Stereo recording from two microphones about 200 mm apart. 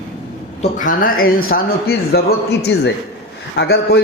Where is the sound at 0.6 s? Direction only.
40° left (ahead or behind).